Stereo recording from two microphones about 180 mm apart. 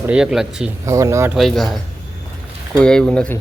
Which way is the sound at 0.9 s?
15° right (ahead or behind).